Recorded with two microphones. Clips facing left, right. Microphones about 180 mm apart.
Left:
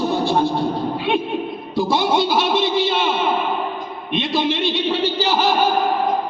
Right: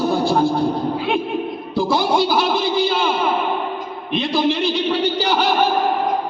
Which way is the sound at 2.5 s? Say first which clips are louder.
Even; 20° left (ahead or behind).